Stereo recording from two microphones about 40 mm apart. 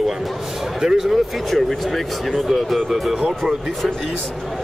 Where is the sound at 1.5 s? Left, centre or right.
Centre.